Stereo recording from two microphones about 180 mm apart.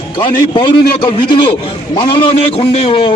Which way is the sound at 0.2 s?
25° left (ahead or behind).